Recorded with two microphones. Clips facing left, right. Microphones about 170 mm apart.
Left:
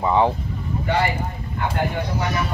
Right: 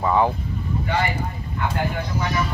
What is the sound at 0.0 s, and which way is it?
Speech, 20° left (ahead or behind).